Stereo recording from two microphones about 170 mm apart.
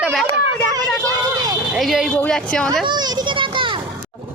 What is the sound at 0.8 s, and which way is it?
A woman's voice, 5° left (ahead or behind).